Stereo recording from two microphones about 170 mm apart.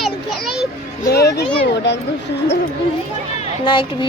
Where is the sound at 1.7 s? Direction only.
90° left.